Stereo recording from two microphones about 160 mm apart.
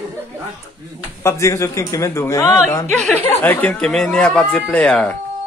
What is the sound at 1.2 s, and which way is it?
A man's voice, 20° left (ahead or behind).